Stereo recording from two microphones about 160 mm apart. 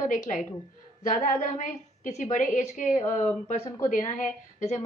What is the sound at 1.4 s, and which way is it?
A woman's voice, 50° left (ahead or behind).